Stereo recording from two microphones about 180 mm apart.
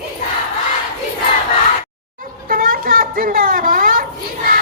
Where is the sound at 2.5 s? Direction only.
50° right (ahead or behind).